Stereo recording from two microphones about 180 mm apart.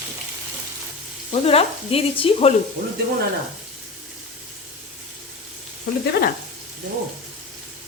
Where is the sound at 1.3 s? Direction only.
35° left (ahead or behind).